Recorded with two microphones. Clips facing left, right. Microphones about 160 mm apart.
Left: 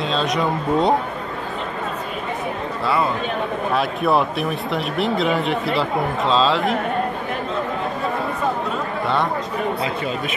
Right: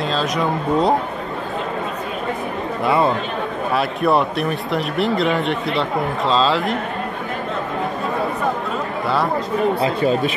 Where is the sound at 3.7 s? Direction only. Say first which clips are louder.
Right 2 dB; centre (ahead or behind).